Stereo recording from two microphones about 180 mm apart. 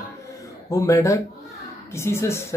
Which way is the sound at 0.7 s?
15° left (ahead or behind).